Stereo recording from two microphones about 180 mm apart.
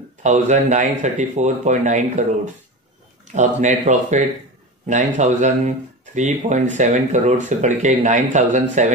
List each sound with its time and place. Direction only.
0.2 s speech: 40° right (ahead or behind)